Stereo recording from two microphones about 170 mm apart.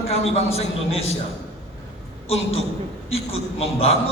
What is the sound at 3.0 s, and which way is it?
Speech, 35° left (ahead or behind).